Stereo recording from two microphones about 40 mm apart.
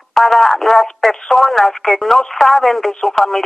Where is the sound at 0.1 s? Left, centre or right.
Centre.